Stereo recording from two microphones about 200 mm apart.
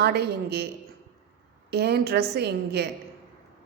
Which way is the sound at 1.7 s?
55° right (ahead or behind).